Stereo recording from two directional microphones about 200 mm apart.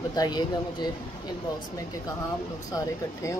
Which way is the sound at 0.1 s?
20° left (ahead or behind).